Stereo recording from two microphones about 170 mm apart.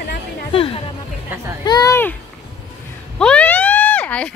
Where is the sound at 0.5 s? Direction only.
35° left (ahead or behind).